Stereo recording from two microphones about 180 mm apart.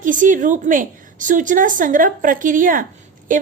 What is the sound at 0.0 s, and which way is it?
A woman's voice, 45° right (ahead or behind).